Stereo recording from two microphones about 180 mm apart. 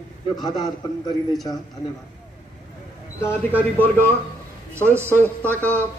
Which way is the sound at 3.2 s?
10° left (ahead or behind).